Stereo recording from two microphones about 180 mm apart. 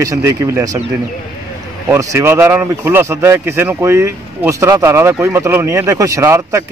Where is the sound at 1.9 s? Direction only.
15° right (ahead or behind).